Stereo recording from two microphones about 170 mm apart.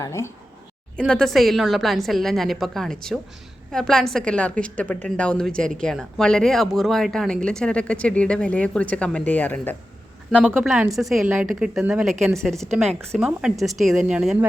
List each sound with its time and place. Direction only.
0.0 s a woman's voice: 15° left (ahead or behind)
0.9 s a woman's voice: 5° left (ahead or behind)
10.6 s speech: 5° right (ahead or behind)